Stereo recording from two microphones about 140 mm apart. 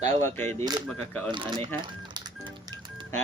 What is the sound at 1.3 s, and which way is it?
Speech, 35° right (ahead or behind).